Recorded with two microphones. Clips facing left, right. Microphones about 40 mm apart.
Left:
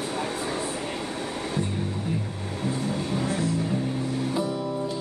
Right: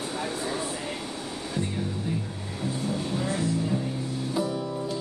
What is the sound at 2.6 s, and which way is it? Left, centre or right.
Music, left.